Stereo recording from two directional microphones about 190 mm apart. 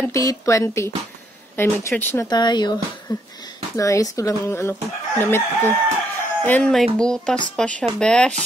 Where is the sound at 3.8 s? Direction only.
15° left (ahead or behind).